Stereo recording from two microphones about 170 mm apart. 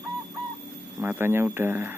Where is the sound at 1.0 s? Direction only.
15° right (ahead or behind).